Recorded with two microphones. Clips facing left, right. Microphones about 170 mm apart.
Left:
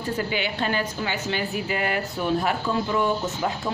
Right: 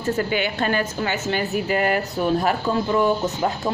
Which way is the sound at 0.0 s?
50° right (ahead or behind).